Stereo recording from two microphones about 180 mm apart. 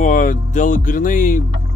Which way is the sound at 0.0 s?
45° left (ahead or behind).